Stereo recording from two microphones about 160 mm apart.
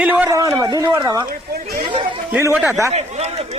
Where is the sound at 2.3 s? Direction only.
15° right (ahead or behind).